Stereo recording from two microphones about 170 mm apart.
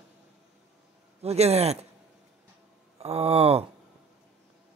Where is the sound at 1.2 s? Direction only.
40° right (ahead or behind).